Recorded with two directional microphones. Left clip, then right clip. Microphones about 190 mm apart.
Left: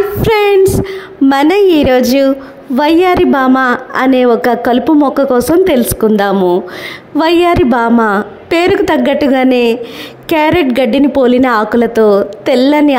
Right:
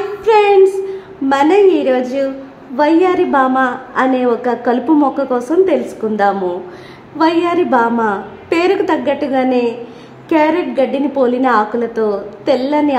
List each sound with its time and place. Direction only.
0.2 s a woman's voice: 40° left (ahead or behind)